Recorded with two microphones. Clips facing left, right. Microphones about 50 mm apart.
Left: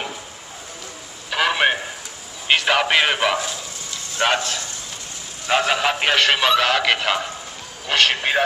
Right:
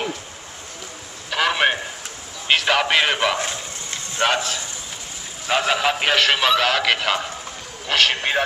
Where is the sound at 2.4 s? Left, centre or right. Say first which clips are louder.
Left 1 dB; centre.